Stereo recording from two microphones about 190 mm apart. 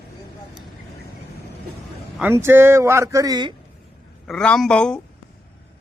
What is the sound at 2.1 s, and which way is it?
Speech, 10° right (ahead or behind).